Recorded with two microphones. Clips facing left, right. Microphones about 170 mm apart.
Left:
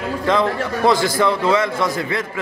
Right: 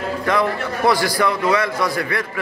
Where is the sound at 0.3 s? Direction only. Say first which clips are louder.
Left 2 dB; 20° left (ahead or behind).